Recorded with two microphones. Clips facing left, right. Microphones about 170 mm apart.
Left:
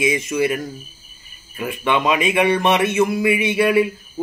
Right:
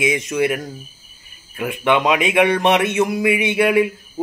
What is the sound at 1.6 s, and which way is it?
Speech, 20° right (ahead or behind).